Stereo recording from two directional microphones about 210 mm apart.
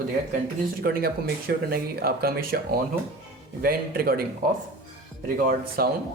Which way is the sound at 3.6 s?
45° right (ahead or behind).